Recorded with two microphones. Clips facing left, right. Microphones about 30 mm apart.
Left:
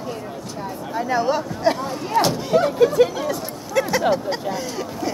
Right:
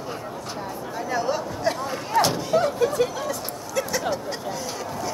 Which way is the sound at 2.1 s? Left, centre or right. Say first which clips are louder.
Left 3 dB; centre.